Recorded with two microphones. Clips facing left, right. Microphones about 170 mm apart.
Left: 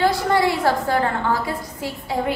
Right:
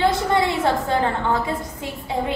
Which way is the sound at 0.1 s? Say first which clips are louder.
Left 1 dB; 20° right (ahead or behind).